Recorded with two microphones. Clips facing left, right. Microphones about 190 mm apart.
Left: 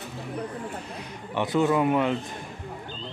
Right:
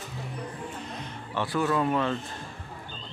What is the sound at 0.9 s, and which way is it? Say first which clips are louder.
A man's voice: left 3 dB; 20° left (ahead or behind).